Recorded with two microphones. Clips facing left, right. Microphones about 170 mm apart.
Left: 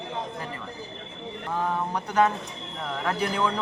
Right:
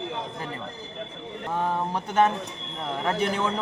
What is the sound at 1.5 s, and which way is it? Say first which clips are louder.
Speech: right 1 dB; 30° right (ahead or behind).